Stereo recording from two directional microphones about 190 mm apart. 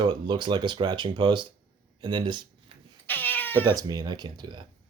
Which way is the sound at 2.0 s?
25° right (ahead or behind).